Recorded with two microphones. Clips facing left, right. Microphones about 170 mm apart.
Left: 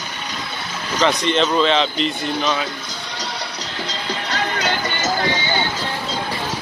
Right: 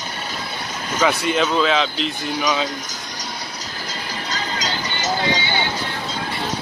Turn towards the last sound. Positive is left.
turn(degrees=60)  # may be behind; listen again after turning